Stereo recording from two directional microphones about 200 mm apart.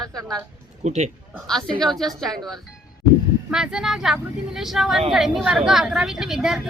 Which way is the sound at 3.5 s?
5° right (ahead or behind).